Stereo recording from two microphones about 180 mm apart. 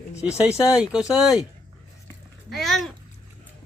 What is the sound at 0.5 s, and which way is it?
Speech, 5° right (ahead or behind).